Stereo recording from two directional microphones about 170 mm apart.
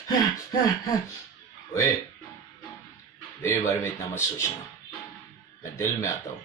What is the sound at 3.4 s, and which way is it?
Speech, 15° left (ahead or behind).